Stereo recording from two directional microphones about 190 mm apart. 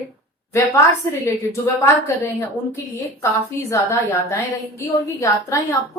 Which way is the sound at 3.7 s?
15° left (ahead or behind).